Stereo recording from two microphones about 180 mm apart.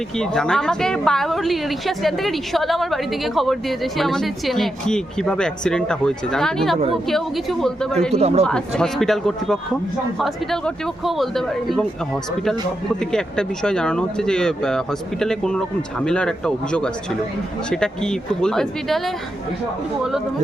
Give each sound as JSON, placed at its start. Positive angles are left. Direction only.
{"t": 0.2, "sound": "a woman's voice", "side_deg": 5}
{"t": 8.1, "sound": "a man's voice", "side_deg": -35}
{"t": 8.4, "sound": "a woman's voice", "side_deg": 5}
{"t": 13.0, "sound": "a woman's voice", "side_deg": 5}